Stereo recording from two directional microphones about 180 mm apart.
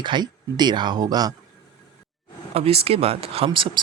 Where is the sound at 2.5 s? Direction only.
35° right (ahead or behind).